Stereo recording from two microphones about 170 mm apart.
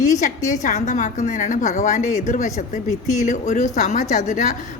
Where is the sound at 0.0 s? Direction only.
45° left (ahead or behind).